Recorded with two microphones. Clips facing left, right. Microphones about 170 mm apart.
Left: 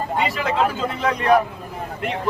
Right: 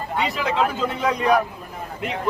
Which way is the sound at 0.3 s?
Centre (ahead or behind).